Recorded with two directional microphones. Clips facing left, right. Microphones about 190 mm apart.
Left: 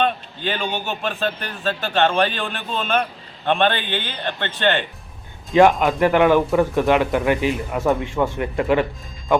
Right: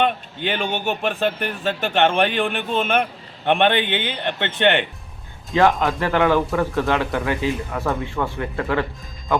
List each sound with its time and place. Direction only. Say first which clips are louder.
0.4 s a man's voice: right 2 dB; 15° right (ahead or behind)
5.5 s speech: left 3 dB; 15° left (ahead or behind)